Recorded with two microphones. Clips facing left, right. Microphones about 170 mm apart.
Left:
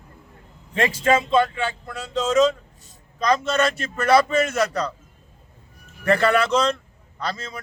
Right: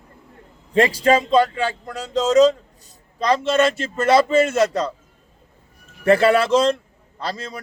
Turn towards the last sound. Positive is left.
turn(degrees=-30)  # may be behind; listen again after turning